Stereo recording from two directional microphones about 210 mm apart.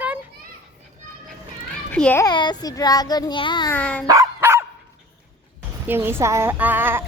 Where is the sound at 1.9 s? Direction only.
5° left (ahead or behind).